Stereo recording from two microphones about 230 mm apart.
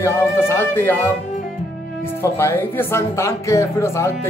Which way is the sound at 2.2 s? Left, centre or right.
Centre.